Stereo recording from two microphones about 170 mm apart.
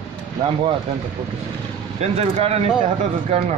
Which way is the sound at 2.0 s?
40° right (ahead or behind).